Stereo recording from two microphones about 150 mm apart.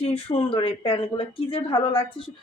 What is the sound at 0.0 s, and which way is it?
Speech, 40° left (ahead or behind).